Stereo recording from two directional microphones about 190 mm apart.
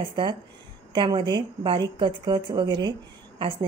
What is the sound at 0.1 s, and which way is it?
A woman's voice, 25° right (ahead or behind).